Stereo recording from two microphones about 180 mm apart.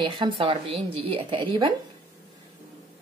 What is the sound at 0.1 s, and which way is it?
Speech, 25° right (ahead or behind).